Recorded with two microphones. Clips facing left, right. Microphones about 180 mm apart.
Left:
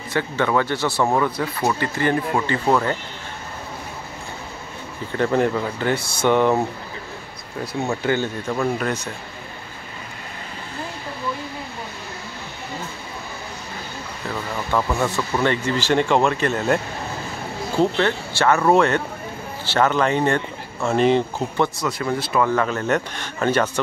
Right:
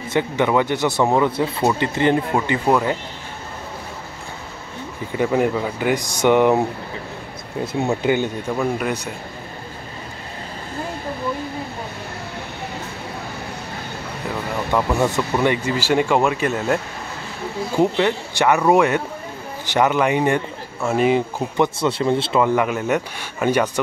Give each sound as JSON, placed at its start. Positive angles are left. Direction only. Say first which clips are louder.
{"t": 0.1, "sound": "speech", "louder": "right 2 dB", "side_deg": -15}
{"t": 5.1, "sound": "speech", "louder": "right 1 dB", "side_deg": -10}
{"t": 7.6, "sound": "speech", "louder": "right 3 dB", "side_deg": -20}
{"t": 14.7, "sound": "speech", "louder": "right 2 dB", "side_deg": -15}
{"t": 17.7, "sound": "speech", "louder": "right 1 dB", "side_deg": -15}
{"t": 21.7, "sound": "speech", "louder": "right 5 dB", "side_deg": -30}